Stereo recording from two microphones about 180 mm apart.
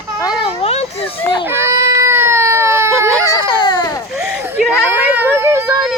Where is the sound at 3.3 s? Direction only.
25° left (ahead or behind).